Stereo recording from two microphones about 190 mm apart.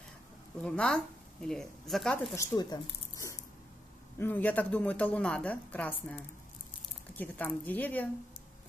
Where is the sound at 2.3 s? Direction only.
15° left (ahead or behind).